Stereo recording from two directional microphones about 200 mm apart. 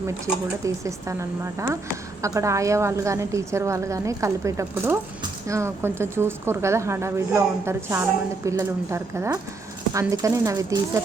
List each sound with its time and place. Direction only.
0.6 s a woman's voice: 15° right (ahead or behind)